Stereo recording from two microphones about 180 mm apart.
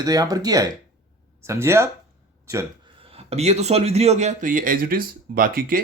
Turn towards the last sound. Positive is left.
turn(degrees=-50)  # may be behind; listen again after turning